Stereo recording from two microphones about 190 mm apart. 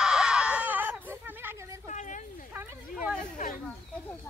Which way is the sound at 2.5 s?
10° right (ahead or behind).